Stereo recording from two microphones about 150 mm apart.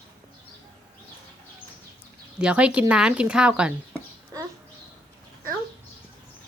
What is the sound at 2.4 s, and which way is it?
Speech, 5° right (ahead or behind).